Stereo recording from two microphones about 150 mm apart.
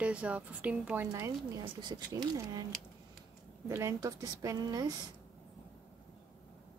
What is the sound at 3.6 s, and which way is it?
A woman's voice, 20° right (ahead or behind).